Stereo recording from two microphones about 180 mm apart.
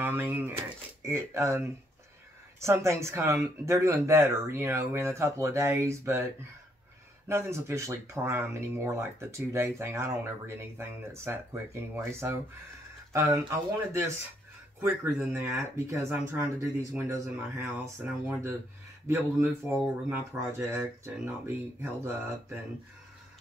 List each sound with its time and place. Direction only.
0.0 s speech: 10° right (ahead or behind)
7.2 s speech: 15° right (ahead or behind)
15.5 s speech: 15° right (ahead or behind)